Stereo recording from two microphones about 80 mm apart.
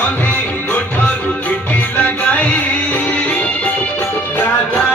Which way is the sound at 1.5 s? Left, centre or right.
Centre.